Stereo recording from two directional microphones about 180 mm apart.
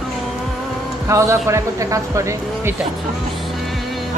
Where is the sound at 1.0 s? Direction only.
15° right (ahead or behind).